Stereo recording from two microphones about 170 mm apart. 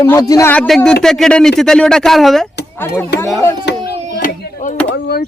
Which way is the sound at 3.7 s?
85° left.